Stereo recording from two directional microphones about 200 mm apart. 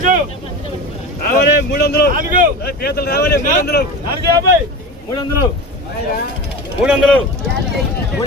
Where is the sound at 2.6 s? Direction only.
50° left (ahead or behind).